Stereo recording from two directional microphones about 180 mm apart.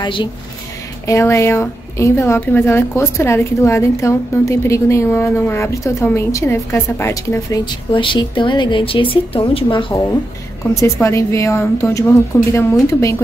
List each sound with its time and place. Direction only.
0.0 s speech: 25° left (ahead or behind)
1.0 s a woman's voice: 15° left (ahead or behind)
7.9 s speech: 25° left (ahead or behind)
10.7 s a woman's voice: 15° left (ahead or behind)